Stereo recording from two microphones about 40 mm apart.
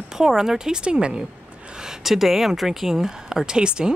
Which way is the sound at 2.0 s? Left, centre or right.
Centre.